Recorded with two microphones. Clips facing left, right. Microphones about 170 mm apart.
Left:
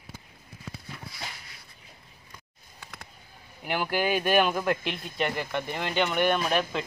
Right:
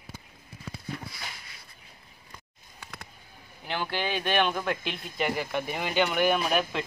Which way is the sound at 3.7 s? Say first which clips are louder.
Left 4 dB; 10° left (ahead or behind).